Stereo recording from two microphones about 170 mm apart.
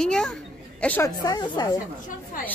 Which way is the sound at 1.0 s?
20° left (ahead or behind).